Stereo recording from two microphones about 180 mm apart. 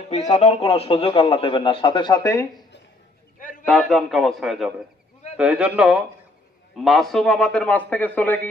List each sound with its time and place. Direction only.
0.1 s a man's voice: 40° left (ahead or behind); by 2.4 s 15° left (ahead or behind)
3.3 s a sound: 50° left (ahead or behind)
3.9 s a man's voice: centre (ahead or behind)